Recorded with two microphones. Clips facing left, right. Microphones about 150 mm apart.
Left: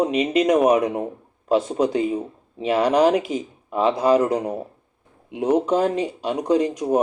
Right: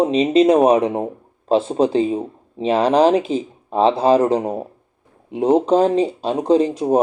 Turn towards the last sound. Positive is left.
turn(degrees=-30)  # may be behind; listen again after turning